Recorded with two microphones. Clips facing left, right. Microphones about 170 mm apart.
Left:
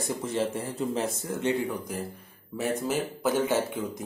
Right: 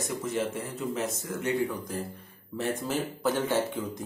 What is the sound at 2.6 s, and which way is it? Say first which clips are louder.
Speech: left 2 dB; 5° left (ahead or behind).